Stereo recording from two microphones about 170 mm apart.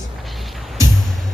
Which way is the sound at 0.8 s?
20° right (ahead or behind).